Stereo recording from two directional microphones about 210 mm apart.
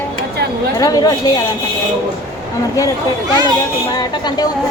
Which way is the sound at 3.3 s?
20° right (ahead or behind).